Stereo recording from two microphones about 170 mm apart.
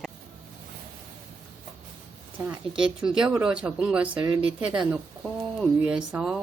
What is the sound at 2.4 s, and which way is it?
Speech, 5° right (ahead or behind).